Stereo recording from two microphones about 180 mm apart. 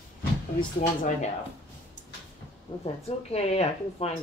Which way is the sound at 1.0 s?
45° left (ahead or behind).